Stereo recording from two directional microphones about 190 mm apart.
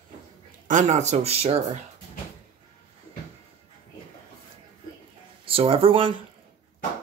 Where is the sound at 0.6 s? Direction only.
40° right (ahead or behind).